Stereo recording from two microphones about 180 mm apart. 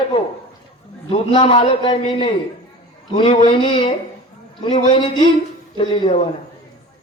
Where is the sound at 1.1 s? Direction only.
30° left (ahead or behind).